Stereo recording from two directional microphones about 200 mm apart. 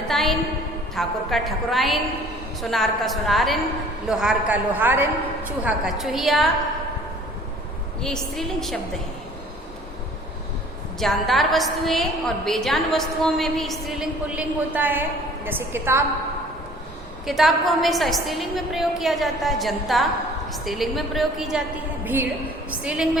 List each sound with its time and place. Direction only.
0.1 s a woman's voice: centre (ahead or behind)
8.0 s a woman's voice: 5° left (ahead or behind)
11.0 s a woman's voice: centre (ahead or behind)
17.2 s a woman's voice: centre (ahead or behind)